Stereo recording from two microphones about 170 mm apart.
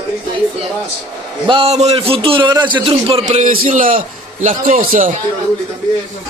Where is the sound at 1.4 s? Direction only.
35° right (ahead or behind); by 5.1 s 55° right (ahead or behind).